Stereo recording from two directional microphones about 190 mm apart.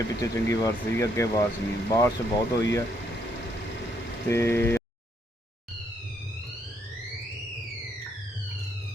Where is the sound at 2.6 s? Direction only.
15° left (ahead or behind).